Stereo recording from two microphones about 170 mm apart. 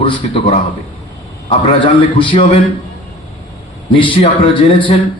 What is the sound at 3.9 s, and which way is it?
A man's voice, 30° left (ahead or behind).